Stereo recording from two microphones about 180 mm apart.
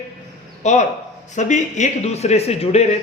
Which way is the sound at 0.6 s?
40° left (ahead or behind).